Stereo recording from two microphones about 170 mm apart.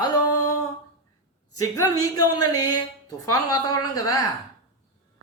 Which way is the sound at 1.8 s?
25° left (ahead or behind).